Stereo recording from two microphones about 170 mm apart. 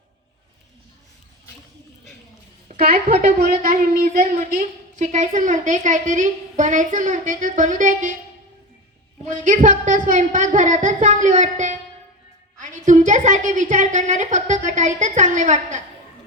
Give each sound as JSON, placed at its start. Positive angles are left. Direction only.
{"t": 2.7, "sound": "a woman's voice", "side_deg": -60}
{"t": 9.2, "sound": "a woman's voice", "side_deg": -45}